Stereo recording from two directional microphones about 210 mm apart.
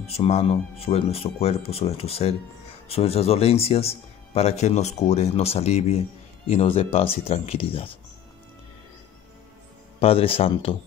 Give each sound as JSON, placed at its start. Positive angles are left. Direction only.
{"t": 0.0, "sound": "speech", "side_deg": 30}
{"t": 9.9, "sound": "speech", "side_deg": 25}